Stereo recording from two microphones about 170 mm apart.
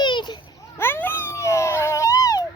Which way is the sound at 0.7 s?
15° left (ahead or behind).